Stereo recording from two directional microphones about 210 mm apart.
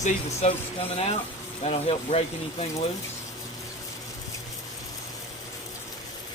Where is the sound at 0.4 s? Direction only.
30° left (ahead or behind).